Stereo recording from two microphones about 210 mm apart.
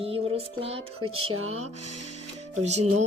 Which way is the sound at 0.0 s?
25° right (ahead or behind).